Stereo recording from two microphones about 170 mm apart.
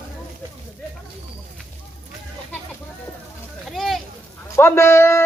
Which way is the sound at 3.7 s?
Centre (ahead or behind).